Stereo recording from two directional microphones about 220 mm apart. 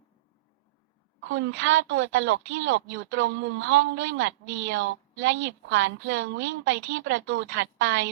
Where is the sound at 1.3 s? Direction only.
60° right (ahead or behind).